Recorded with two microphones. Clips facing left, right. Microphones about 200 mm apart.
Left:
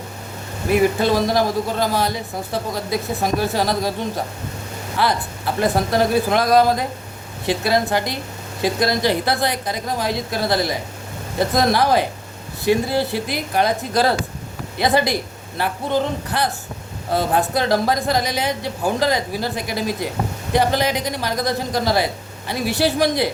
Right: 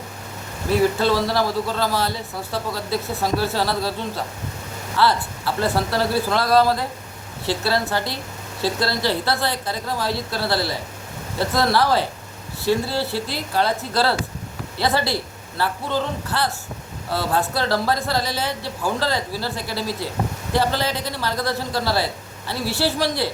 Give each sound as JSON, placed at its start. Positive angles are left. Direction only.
{"t": 0.7, "sound": "a woman's voice", "side_deg": 15}